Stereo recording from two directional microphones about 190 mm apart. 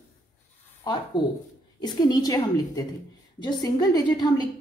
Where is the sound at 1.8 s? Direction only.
20° left (ahead or behind).